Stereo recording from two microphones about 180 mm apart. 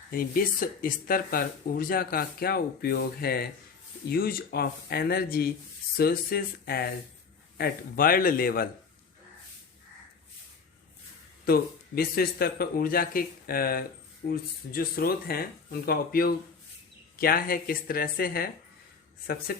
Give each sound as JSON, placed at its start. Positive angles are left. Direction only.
{"t": 0.1, "sound": "speech", "side_deg": 55}
{"t": 11.4, "sound": "speech", "side_deg": 60}